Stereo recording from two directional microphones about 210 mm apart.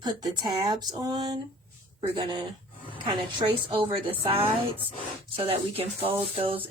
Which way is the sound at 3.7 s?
25° right (ahead or behind).